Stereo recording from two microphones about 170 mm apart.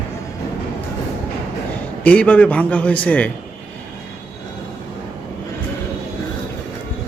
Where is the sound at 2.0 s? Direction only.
10° left (ahead or behind).